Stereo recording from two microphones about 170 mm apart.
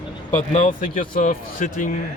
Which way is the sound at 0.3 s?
50° left (ahead or behind).